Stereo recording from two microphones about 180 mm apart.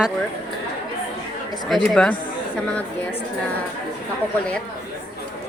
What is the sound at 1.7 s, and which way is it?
Speech, 5° left (ahead or behind).